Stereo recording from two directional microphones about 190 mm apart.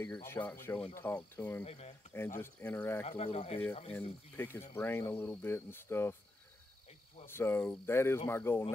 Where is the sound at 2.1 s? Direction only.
10° left (ahead or behind).